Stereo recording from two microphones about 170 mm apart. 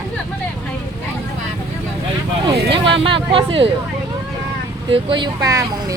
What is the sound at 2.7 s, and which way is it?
Speech, 30° right (ahead or behind).